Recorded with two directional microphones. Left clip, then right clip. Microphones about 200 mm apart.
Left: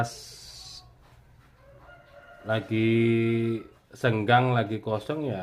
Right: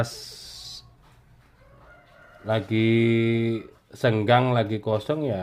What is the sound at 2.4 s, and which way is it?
Speech, 30° right (ahead or behind).